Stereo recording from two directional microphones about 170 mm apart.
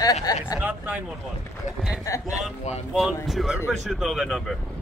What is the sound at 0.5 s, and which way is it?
Speech, 10° right (ahead or behind).